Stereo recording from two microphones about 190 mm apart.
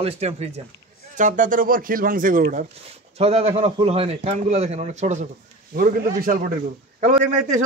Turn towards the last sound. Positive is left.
turn(degrees=-40)  # may be behind; listen again after turning